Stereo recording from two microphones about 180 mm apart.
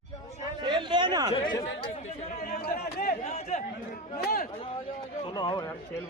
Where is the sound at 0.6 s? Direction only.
25° right (ahead or behind).